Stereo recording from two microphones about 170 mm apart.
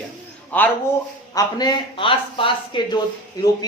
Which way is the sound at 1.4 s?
25° left (ahead or behind).